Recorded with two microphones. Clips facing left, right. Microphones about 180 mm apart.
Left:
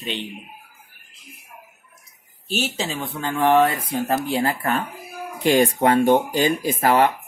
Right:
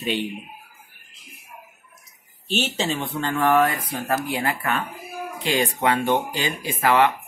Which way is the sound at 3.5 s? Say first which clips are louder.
Left 3 dB; 25° left (ahead or behind).